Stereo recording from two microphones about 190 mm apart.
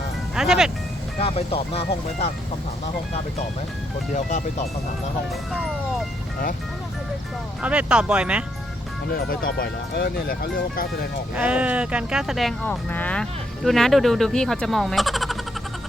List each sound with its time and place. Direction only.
0.3 s speech: centre (ahead or behind)
1.2 s speech: 30° left (ahead or behind)
4.1 s speech: 40° left (ahead or behind)
7.6 s speech: 5° right (ahead or behind)
9.0 s speech: 50° left (ahead or behind)
11.3 s speech: 5° right (ahead or behind)